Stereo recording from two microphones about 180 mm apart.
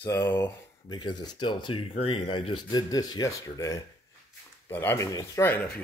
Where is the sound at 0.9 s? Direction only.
25° left (ahead or behind).